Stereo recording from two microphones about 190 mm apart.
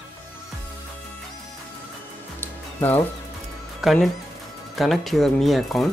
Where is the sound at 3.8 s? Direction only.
Centre (ahead or behind).